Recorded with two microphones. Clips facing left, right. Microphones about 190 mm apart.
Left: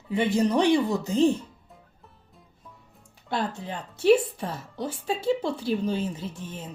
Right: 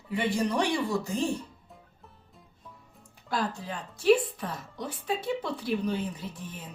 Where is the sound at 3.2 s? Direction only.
25° left (ahead or behind).